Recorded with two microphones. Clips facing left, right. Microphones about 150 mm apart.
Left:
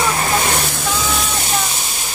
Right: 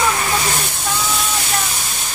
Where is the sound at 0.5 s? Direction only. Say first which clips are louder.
Left 2 dB; 90° left.